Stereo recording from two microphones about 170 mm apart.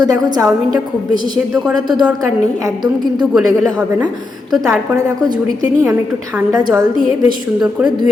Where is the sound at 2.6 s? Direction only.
25° right (ahead or behind).